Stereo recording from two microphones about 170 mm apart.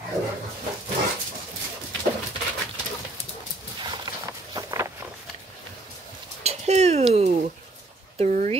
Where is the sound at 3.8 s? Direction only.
25° right (ahead or behind).